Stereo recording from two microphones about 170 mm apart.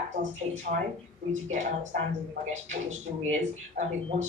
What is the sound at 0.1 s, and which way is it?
Speech, 45° right (ahead or behind).